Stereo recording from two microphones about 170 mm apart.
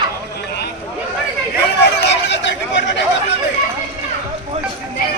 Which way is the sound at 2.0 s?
90° left.